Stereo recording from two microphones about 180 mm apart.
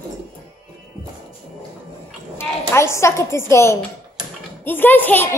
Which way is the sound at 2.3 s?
15° left (ahead or behind).